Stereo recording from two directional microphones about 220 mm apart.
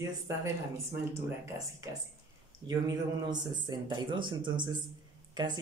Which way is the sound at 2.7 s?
20° right (ahead or behind).